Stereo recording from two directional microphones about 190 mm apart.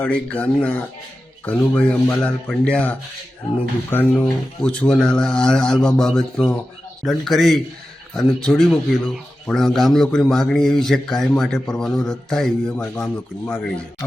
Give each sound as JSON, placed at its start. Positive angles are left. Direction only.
{"t": 0.0, "sound": "speech", "side_deg": 5}